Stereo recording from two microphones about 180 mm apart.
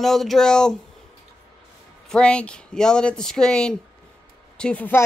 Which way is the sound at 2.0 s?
5° left (ahead or behind).